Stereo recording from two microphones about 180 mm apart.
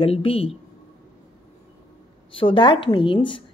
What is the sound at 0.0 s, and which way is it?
Speech, 30° left (ahead or behind).